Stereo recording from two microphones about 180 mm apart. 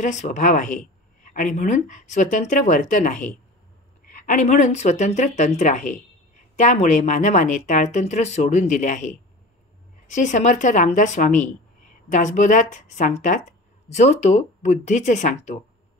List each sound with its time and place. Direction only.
0.0 s speech: 45° left (ahead or behind)